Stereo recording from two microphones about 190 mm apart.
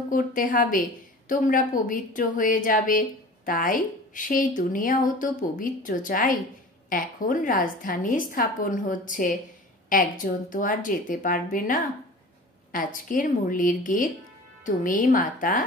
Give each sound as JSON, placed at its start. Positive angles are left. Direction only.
{"t": 0.1, "sound": "a woman's voice", "side_deg": 45}